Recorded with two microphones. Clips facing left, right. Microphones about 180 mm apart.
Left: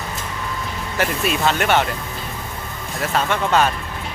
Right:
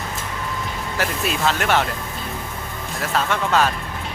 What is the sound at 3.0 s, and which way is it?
Speech, centre (ahead or behind).